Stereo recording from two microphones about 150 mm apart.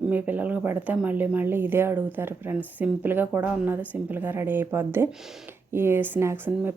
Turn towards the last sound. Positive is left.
turn(degrees=-15)  # may be behind; listen again after turning